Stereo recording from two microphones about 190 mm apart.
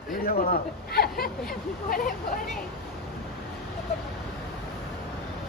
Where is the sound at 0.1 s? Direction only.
50° left (ahead or behind).